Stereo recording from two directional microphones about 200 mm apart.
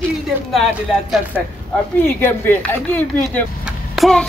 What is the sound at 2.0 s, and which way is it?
Speech, 10° left (ahead or behind).